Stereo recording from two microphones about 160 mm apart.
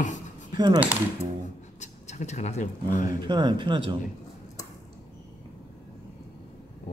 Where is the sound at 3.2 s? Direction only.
30° right (ahead or behind).